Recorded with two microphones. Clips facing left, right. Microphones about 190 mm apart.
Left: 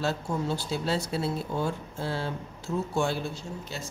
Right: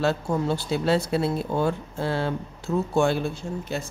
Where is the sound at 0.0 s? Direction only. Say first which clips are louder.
Right 5 dB; 65° right (ahead or behind).